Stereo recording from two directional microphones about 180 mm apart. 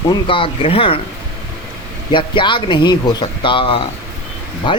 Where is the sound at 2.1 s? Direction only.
25° left (ahead or behind).